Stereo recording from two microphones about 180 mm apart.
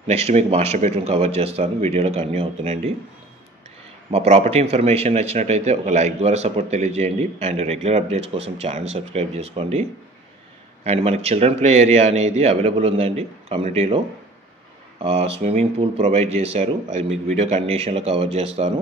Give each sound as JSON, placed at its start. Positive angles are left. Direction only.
{"t": 0.0, "sound": "a man's voice", "side_deg": -35}
{"t": 4.1, "sound": "a man's voice", "side_deg": -35}